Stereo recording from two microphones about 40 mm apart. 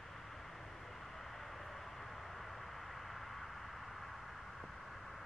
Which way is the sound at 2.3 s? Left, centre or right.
Centre.